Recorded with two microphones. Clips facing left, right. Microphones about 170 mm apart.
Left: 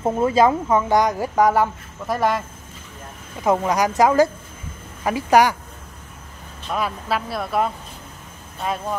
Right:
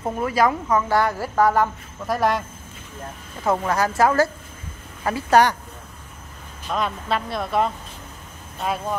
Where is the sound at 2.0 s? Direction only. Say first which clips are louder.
Even; centre (ahead or behind).